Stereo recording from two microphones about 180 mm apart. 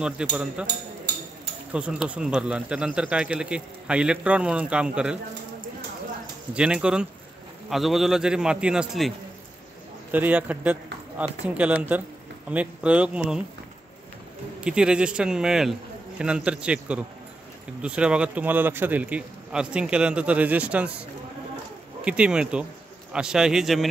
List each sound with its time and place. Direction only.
0.0 s speech: 5° right (ahead or behind)
0.7 s a sound: 65° right (ahead or behind)
1.7 s speech: 5° right (ahead or behind)
6.5 s speech: 5° right (ahead or behind)
10.1 s a man's voice: 10° right (ahead or behind)
14.6 s a man's voice: 5° right (ahead or behind)
22.0 s speech: 5° right (ahead or behind)